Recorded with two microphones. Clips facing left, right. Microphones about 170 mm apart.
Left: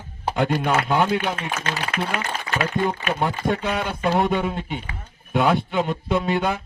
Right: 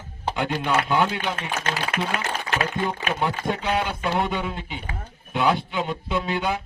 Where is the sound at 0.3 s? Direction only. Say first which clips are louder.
Left 3 dB; 50° left (ahead or behind).